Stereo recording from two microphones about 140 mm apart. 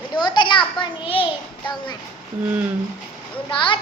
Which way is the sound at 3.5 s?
35° left (ahead or behind).